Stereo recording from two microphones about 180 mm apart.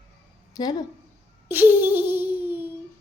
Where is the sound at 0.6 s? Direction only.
20° left (ahead or behind).